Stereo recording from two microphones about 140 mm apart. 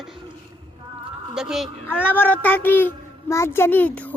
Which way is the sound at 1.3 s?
5° right (ahead or behind).